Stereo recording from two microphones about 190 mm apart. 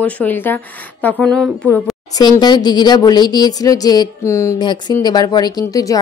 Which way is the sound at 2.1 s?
20° left (ahead or behind).